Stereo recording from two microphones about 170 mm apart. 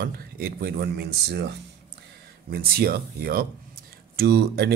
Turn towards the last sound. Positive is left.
turn(degrees=-70)  # may be behind; listen again after turning